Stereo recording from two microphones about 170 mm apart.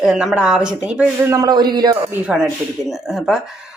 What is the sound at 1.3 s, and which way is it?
Speech, 20° right (ahead or behind).